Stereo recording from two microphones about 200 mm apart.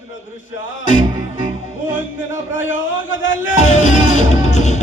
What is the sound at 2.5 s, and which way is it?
A man's voice, 70° left (ahead or behind).